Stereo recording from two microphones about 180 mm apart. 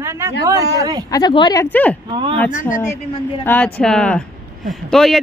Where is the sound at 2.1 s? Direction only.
30° right (ahead or behind).